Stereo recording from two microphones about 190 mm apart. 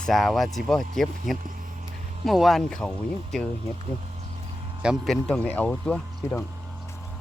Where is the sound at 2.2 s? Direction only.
Centre (ahead or behind).